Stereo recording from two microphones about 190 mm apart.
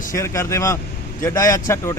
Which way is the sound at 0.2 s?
15° left (ahead or behind).